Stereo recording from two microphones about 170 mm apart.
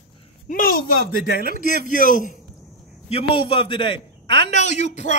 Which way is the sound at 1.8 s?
50° left (ahead or behind).